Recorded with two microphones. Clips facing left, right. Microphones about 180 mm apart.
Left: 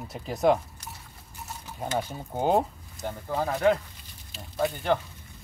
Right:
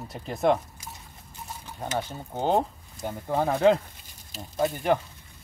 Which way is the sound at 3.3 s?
25° right (ahead or behind).